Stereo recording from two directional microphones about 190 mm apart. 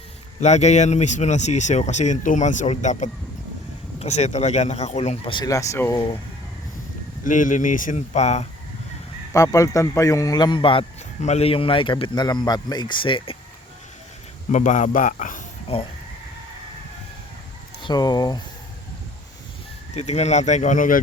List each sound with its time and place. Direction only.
0.3 s speech: 35° left (ahead or behind); by 6.1 s 15° left (ahead or behind)
7.3 s speech: 45° left (ahead or behind)
9.3 s a man's voice: 15° left (ahead or behind)
14.5 s speech: 40° left (ahead or behind)
15.7 s speech: 30° left (ahead or behind)
17.8 s a man's voice: 20° left (ahead or behind)
20.0 s speech: 35° left (ahead or behind)